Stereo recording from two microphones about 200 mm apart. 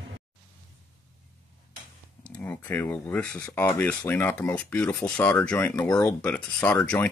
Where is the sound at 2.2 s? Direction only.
5° left (ahead or behind).